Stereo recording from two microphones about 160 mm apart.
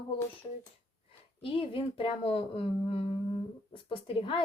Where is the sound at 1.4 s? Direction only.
35° left (ahead or behind).